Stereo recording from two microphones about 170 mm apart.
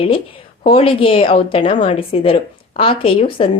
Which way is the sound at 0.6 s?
30° left (ahead or behind).